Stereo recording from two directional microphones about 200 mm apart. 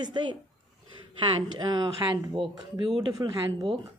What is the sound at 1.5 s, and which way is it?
Speech, 20° right (ahead or behind).